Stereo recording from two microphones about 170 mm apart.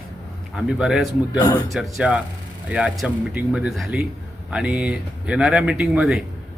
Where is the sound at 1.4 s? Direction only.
20° left (ahead or behind).